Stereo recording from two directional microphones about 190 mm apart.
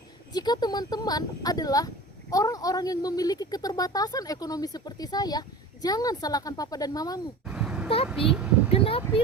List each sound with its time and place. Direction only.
0.3 s speech: 20° left (ahead or behind)
7.4 s a sound: 5° right (ahead or behind)
8.0 s speech: centre (ahead or behind)
8.7 s speech: 30° left (ahead or behind)